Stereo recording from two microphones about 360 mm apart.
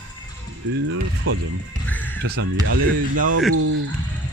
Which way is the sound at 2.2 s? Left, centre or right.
Right.